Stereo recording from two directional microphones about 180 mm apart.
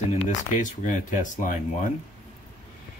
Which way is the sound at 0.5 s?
45° left (ahead or behind).